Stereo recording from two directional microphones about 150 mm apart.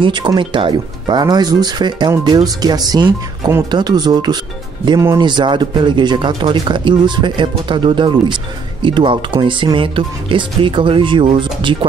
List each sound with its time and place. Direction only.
0.0 s speech: 30° right (ahead or behind)